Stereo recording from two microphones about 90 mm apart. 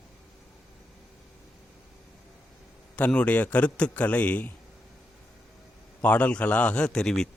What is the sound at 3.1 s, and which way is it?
A man's voice, 15° left (ahead or behind).